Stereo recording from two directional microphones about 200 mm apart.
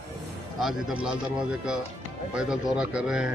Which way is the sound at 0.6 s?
Centre (ahead or behind).